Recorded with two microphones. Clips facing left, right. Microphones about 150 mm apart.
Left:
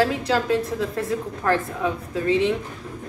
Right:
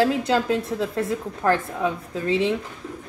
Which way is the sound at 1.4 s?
30° right (ahead or behind).